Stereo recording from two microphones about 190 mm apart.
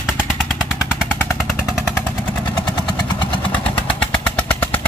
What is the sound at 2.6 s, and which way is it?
Vehicle, 20° left (ahead or behind).